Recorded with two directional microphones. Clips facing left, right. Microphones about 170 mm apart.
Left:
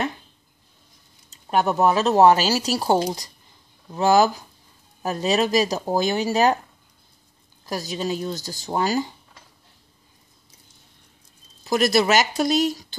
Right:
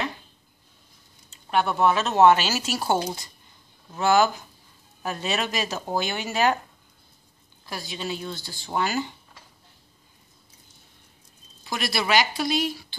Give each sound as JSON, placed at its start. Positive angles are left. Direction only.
{"t": 1.3, "sound": "speech", "side_deg": 40}
{"t": 7.6, "sound": "speech", "side_deg": 40}
{"t": 11.6, "sound": "speech", "side_deg": 40}